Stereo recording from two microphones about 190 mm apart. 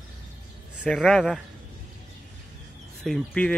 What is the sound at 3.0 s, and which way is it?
Speech, 5° left (ahead or behind).